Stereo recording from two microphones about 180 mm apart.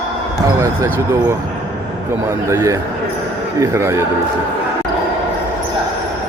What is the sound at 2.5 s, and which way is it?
Speech, 15° right (ahead or behind).